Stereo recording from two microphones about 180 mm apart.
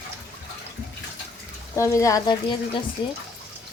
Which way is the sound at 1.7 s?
15° left (ahead or behind).